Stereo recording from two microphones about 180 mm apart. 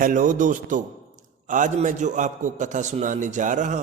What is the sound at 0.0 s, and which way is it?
A man's voice, 45° right (ahead or behind).